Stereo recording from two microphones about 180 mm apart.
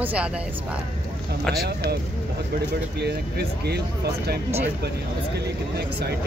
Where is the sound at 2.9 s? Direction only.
65° right (ahead or behind).